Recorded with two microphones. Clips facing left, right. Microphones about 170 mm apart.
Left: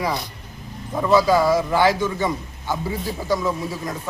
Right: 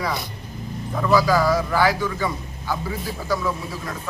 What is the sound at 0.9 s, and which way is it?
A man's voice, 20° left (ahead or behind).